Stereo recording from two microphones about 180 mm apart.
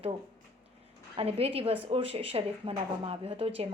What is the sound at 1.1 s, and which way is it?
Speech, 35° right (ahead or behind).